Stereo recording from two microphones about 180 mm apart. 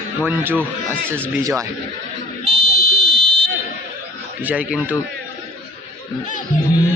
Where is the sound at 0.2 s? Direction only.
10° right (ahead or behind).